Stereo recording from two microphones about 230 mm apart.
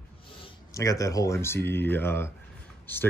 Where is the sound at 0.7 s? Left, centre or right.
Centre.